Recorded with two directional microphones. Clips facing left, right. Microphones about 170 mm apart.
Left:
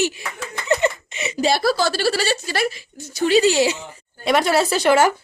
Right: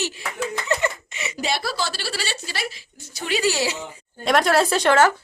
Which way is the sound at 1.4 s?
40° left (ahead or behind).